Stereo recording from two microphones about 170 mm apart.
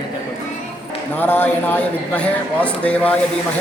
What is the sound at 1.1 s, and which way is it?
A man's voice, 10° left (ahead or behind).